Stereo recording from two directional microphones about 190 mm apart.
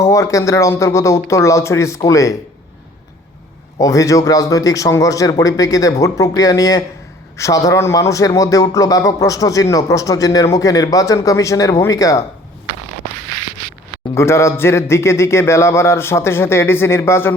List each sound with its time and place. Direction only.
0.0 s a man's voice: 15° left (ahead or behind)
3.8 s a man's voice: 15° left (ahead or behind)
14.2 s a man's voice: 15° left (ahead or behind)